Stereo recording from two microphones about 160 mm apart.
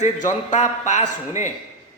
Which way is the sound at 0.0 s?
50° left (ahead or behind).